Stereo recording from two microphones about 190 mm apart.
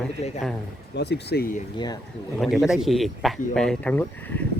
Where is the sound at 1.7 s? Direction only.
20° left (ahead or behind).